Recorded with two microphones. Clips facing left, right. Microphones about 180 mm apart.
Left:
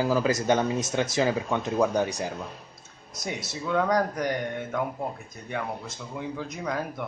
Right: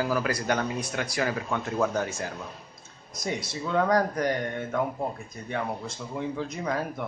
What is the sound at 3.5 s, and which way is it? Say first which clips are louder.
Speech: even; centre (ahead or behind).